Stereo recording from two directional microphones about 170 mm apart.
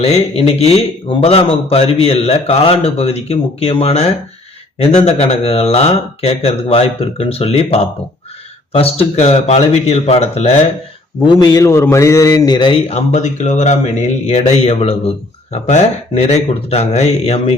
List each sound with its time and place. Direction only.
0.0 s a man's voice: 35° left (ahead or behind)
11.3 s a man's voice: 20° left (ahead or behind); by 17.5 s 40° left (ahead or behind)